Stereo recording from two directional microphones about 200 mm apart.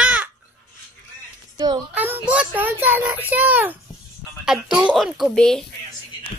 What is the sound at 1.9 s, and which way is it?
A child's voice, 10° right (ahead or behind).